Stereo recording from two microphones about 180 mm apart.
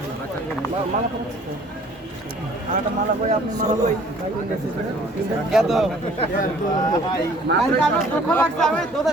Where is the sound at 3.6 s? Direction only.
40° right (ahead or behind).